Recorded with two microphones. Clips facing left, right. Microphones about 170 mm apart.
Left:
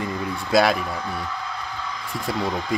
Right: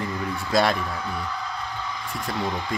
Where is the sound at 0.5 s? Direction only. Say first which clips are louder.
Left 3 dB; 5° left (ahead or behind).